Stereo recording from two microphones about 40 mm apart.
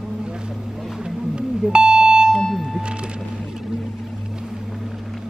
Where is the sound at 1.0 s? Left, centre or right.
Right.